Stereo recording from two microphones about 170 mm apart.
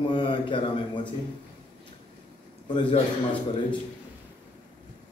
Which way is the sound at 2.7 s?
30° left (ahead or behind).